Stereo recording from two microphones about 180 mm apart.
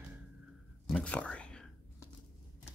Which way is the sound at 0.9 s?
5° left (ahead or behind).